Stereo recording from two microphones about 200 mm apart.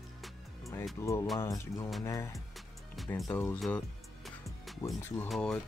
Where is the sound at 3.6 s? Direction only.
Centre (ahead or behind).